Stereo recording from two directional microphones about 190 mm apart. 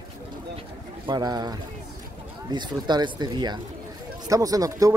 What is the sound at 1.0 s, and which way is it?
Speech, 20° right (ahead or behind).